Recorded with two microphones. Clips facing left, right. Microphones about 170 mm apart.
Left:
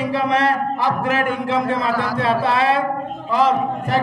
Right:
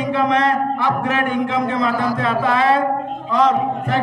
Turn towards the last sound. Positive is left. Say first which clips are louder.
# even
turn(degrees=30)  # may be behind; listen again after turning